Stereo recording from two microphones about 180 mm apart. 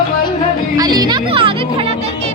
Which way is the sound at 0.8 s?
20° right (ahead or behind).